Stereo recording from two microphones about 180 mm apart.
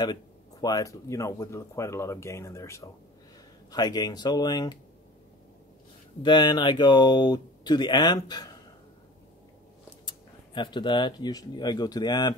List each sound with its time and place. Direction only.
0.0 s speech: 20° left (ahead or behind)
6.2 s speech: 25° left (ahead or behind)
10.0 s speech: 25° left (ahead or behind)